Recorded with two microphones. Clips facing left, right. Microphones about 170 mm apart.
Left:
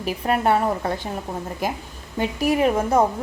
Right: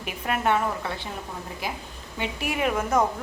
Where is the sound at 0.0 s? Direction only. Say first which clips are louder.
Left 5 dB; 35° left (ahead or behind).